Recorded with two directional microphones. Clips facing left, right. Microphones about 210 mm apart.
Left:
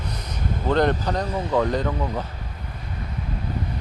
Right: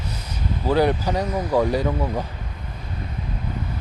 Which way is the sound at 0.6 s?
5° right (ahead or behind).